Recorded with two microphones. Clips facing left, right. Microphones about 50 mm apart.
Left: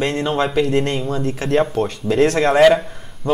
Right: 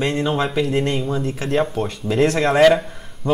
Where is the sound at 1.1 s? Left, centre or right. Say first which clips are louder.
Left 2 dB; centre.